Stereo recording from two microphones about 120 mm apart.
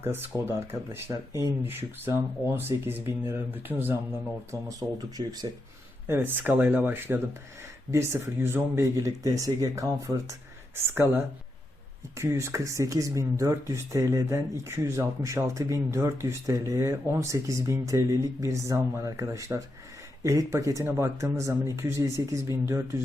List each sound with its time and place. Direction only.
0.0 s speech: 20° right (ahead or behind)
4.8 s speech: 30° right (ahead or behind)
6.1 s speech: 20° right (ahead or behind)
10.9 s speech: 15° right (ahead or behind)